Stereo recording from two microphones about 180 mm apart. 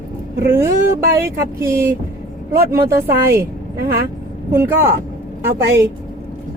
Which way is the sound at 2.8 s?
60° right (ahead or behind).